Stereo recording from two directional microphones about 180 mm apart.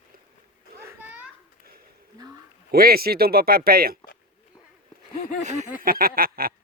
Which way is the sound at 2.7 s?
55° right (ahead or behind).